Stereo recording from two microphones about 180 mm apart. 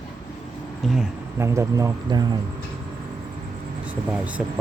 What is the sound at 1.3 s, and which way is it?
Speech, 15° right (ahead or behind).